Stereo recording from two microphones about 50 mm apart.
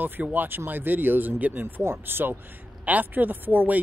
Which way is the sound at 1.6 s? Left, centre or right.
Right.